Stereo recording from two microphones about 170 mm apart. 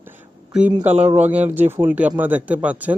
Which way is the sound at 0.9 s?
35° right (ahead or behind).